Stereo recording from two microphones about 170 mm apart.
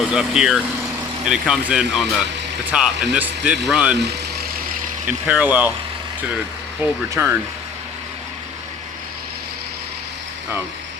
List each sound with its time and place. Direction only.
0.0 s speech: 5° right (ahead or behind)
5.0 s speech: 10° right (ahead or behind)
7.1 s speech: 15° right (ahead or behind)